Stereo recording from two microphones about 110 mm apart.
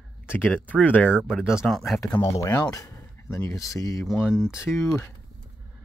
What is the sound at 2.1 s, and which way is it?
Speech, 25° left (ahead or behind).